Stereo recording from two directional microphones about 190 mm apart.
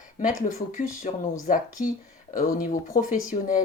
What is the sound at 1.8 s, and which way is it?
A woman's voice, 45° left (ahead or behind).